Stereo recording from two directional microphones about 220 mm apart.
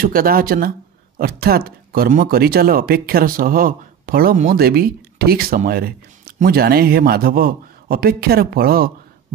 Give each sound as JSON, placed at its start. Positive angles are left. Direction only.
{"t": 0.0, "sound": "speech", "side_deg": -40}